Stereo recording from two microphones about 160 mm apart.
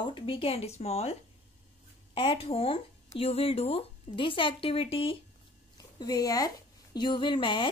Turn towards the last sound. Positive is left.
turn(degrees=30)  # may be behind; listen again after turning